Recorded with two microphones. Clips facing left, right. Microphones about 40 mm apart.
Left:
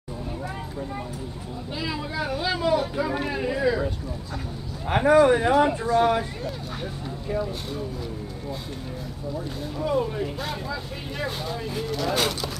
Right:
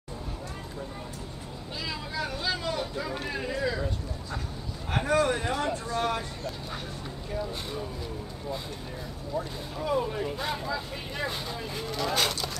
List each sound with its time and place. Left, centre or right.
1.8 s speech: centre
3.0 s a sound: centre
4.8 s speech: left
7.7 s speech: centre